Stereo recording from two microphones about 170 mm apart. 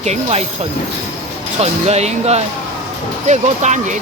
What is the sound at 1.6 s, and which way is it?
Speech, 40° right (ahead or behind).